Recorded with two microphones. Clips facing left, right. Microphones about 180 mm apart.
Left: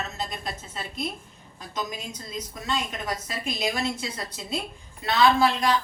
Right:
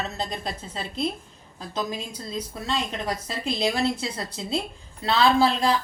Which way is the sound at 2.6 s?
30° right (ahead or behind).